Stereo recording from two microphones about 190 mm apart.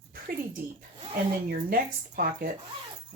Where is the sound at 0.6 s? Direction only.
50° right (ahead or behind).